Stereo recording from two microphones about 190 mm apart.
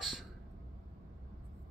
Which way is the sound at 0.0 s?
Centre (ahead or behind).